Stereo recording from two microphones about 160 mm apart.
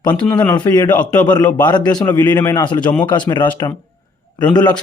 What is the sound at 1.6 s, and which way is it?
Speech, 25° left (ahead or behind).